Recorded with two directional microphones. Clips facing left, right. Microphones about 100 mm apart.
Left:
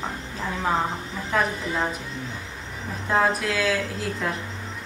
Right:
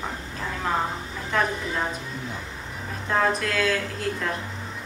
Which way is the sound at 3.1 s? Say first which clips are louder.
Left 1 dB; 5° left (ahead or behind).